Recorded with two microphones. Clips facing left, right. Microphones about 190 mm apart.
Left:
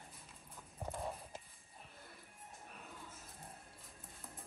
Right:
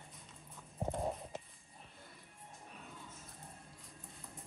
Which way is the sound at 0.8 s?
25° right (ahead or behind).